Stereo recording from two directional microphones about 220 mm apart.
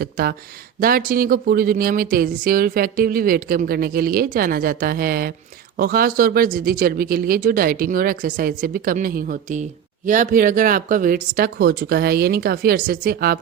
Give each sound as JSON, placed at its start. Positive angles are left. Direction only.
{"t": 0.0, "sound": "speech", "side_deg": -45}